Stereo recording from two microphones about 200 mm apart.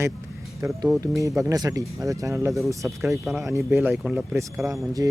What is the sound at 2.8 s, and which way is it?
Speech, centre (ahead or behind).